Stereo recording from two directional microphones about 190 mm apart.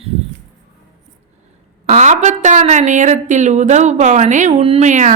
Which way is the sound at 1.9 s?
40° right (ahead or behind).